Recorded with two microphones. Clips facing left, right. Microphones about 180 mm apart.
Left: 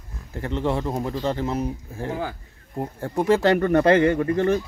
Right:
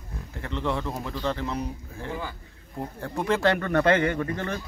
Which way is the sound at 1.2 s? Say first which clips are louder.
Left 2 dB; 25° left (ahead or behind).